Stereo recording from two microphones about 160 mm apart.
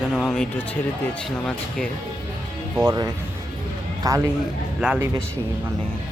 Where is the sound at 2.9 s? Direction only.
25° right (ahead or behind).